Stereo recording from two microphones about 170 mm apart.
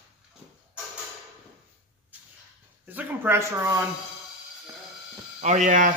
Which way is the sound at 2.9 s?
10° right (ahead or behind).